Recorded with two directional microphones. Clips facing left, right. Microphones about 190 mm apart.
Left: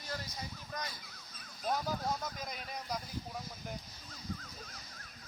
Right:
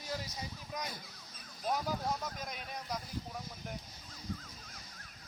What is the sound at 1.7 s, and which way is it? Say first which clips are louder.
Speech: even; 5° right (ahead or behind).